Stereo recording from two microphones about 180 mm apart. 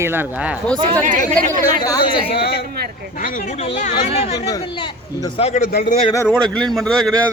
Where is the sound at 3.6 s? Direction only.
35° left (ahead or behind).